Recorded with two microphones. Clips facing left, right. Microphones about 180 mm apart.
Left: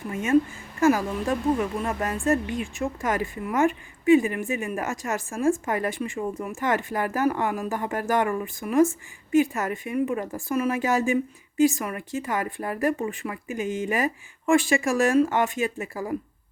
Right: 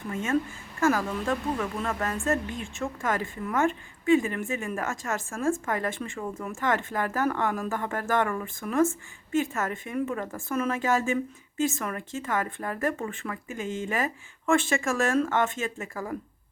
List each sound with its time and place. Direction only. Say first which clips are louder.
0.1 s a woman's voice: left 6 dB; 15° left (ahead or behind)